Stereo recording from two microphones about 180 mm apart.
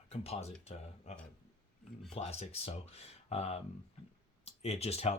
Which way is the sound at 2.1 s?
35° left (ahead or behind).